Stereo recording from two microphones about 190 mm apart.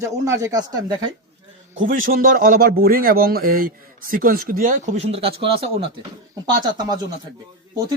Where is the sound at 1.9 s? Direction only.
50° right (ahead or behind); by 6.1 s 30° right (ahead or behind).